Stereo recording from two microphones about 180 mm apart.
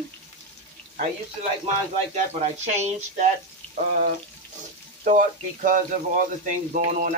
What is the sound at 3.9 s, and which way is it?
Speech, 55° right (ahead or behind).